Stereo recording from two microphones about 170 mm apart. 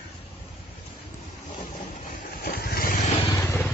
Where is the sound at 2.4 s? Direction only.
65° left (ahead or behind).